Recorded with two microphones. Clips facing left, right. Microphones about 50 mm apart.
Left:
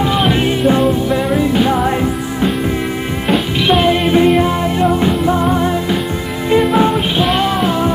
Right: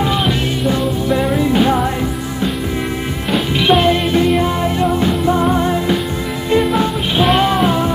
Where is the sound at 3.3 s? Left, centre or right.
Centre.